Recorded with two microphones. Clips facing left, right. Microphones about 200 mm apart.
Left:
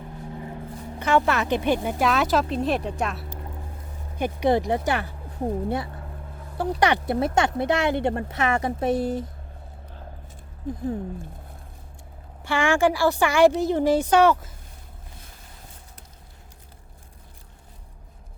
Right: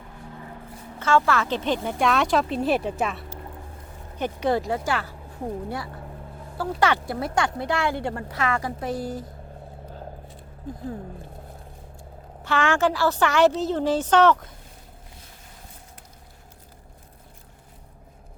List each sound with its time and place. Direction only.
0.9 s a woman's voice: 15° left (ahead or behind); by 3.2 s centre (ahead or behind)
4.2 s speech: 15° left (ahead or behind)
12.4 s a woman's voice: 10° left (ahead or behind)